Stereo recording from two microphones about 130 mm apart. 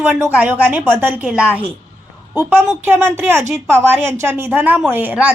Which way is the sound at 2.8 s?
15° right (ahead or behind).